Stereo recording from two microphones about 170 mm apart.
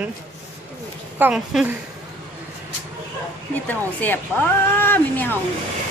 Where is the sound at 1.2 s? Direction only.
5° right (ahead or behind).